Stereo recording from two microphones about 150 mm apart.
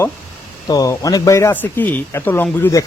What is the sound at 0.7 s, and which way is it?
Speech, 25° left (ahead or behind).